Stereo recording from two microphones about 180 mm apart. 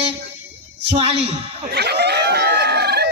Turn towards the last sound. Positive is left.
turn(degrees=-65)  # may be behind; listen again after turning